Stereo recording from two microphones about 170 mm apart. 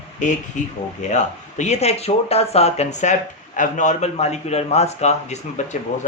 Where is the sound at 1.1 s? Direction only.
45° left (ahead or behind).